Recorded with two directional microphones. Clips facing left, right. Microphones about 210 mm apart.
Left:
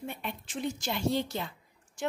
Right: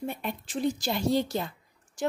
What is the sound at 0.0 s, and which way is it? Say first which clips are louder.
A woman's voice: right 5 dB; 40° right (ahead or behind).